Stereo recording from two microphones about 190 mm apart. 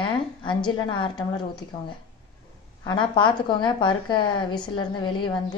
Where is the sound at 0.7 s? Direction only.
25° left (ahead or behind).